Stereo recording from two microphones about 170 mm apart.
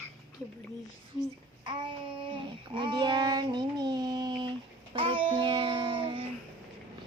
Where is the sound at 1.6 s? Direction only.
30° right (ahead or behind).